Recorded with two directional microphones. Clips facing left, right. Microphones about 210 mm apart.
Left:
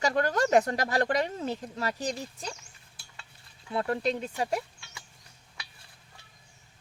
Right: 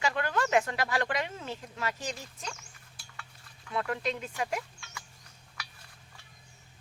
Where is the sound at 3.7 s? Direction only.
35° left (ahead or behind).